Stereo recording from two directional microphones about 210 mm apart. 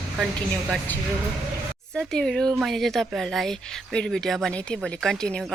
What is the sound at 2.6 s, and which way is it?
Speech, centre (ahead or behind).